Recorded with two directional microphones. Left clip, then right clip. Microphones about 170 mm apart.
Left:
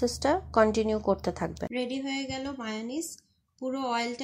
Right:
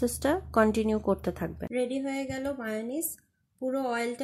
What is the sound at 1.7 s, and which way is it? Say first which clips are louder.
Speech: right 4 dB; 15° right (ahead or behind).